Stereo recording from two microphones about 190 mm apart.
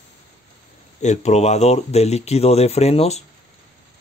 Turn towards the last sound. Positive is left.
turn(degrees=35)  # may be behind; listen again after turning